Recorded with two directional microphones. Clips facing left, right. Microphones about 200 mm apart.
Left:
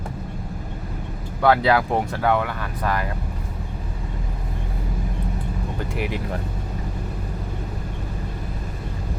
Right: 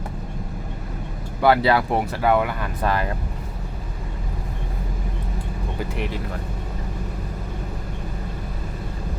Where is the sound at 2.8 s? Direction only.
25° right (ahead or behind).